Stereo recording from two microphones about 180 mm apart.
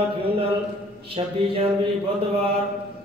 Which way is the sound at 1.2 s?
30° right (ahead or behind).